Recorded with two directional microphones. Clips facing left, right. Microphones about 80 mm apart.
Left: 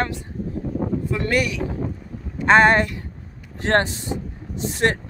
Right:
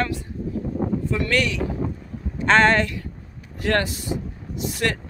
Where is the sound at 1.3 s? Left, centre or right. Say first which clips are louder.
Left 2 dB; centre.